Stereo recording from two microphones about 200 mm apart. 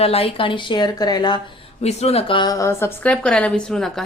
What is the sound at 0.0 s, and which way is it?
Speech, 30° left (ahead or behind).